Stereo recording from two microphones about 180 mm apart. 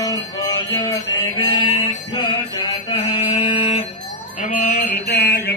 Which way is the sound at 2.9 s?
30° left (ahead or behind).